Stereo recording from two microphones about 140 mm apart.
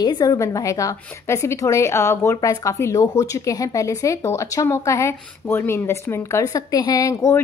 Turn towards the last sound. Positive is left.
turn(degrees=20)  # may be behind; listen again after turning